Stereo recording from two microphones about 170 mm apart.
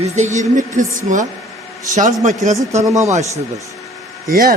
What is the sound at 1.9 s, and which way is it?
Speech, 45° right (ahead or behind).